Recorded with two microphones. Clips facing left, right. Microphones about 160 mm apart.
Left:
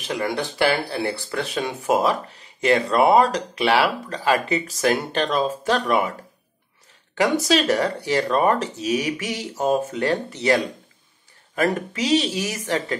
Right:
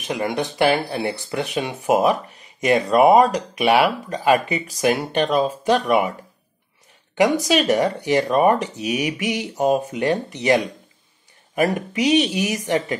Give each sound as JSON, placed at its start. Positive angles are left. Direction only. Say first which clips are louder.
{"t": 0.0, "sound": "speech", "louder": "right 2 dB", "side_deg": -15}
{"t": 7.2, "sound": "speech", "louder": "right 2 dB", "side_deg": -15}